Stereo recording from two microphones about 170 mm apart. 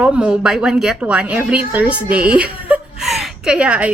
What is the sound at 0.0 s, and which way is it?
A woman's voice, 5° right (ahead or behind).